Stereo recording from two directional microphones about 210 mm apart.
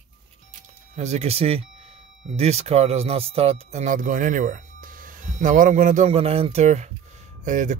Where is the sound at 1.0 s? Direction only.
30° right (ahead or behind).